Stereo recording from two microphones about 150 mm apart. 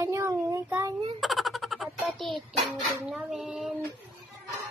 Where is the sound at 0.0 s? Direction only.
20° right (ahead or behind).